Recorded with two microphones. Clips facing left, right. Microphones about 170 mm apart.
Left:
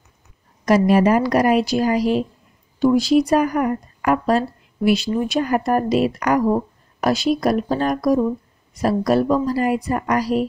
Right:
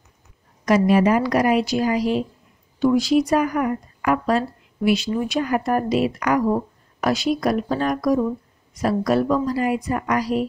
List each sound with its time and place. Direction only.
0.7 s speech: 40° left (ahead or behind)